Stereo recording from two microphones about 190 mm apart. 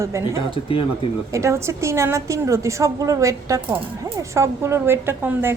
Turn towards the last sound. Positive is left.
turn(degrees=-10)  # may be behind; listen again after turning